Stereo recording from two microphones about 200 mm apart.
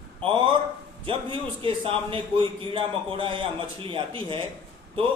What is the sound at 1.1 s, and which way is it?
A man's voice, 25° right (ahead or behind).